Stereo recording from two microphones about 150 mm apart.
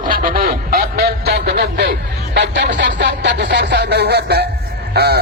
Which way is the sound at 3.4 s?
90° right.